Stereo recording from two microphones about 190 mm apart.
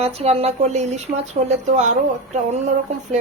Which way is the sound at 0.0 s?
35° right (ahead or behind).